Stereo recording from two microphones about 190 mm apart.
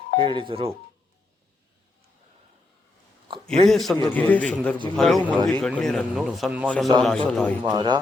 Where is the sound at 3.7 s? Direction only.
Centre (ahead or behind).